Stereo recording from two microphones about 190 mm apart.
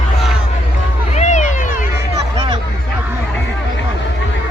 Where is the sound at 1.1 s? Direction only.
40° left (ahead or behind).